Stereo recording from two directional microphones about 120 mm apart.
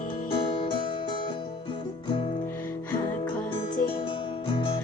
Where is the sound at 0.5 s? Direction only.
50° left (ahead or behind).